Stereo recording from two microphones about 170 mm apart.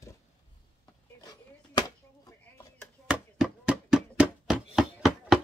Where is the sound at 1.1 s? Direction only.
20° left (ahead or behind).